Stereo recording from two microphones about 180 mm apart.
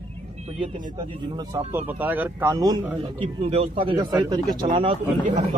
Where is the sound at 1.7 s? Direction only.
10° right (ahead or behind).